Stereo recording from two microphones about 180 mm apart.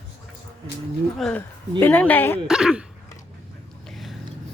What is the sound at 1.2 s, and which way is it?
A woman's voice, centre (ahead or behind).